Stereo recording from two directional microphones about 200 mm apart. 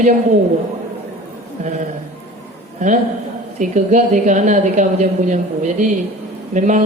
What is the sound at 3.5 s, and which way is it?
A woman's voice, 35° right (ahead or behind).